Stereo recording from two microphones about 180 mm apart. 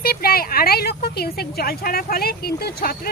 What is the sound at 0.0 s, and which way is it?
Speech, 55° left (ahead or behind).